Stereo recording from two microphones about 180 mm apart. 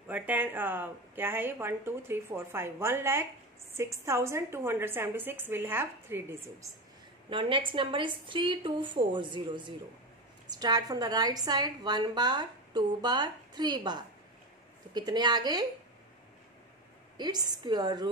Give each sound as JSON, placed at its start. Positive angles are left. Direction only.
{"t": 0.1, "sound": "speech", "side_deg": -10}
{"t": 7.2, "sound": "a woman's voice", "side_deg": -30}
{"t": 17.2, "sound": "a woman's voice", "side_deg": -20}